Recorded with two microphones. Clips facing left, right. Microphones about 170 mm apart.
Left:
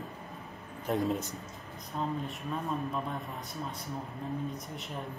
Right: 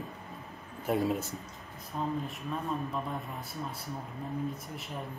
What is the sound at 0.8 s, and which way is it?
Speech, centre (ahead or behind).